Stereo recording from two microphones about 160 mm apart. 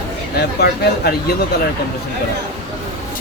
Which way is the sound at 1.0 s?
90° left.